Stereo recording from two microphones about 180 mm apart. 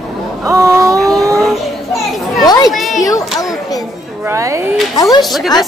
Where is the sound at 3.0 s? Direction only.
20° left (ahead or behind).